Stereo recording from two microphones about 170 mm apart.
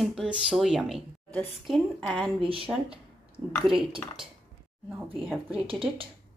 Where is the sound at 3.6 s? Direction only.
30° right (ahead or behind).